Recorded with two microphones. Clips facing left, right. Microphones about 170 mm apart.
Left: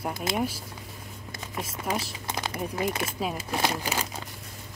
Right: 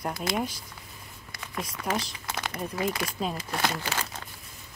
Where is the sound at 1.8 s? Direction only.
15° left (ahead or behind).